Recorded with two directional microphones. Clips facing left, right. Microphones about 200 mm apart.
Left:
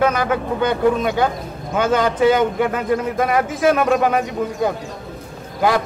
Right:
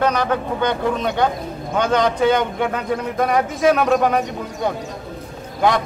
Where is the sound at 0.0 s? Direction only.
5° left (ahead or behind).